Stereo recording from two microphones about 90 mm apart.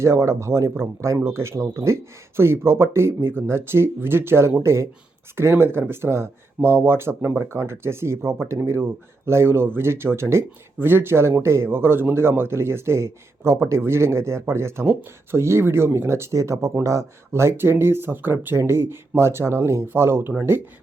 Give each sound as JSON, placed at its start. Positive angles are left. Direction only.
{"t": 0.0, "sound": "speech", "side_deg": -30}